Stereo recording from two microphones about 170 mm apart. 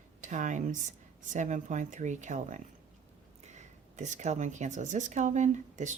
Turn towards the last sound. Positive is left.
turn(degrees=-45)  # may be behind; listen again after turning